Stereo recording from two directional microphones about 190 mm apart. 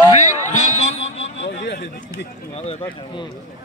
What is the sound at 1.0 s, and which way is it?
Speech, 80° left.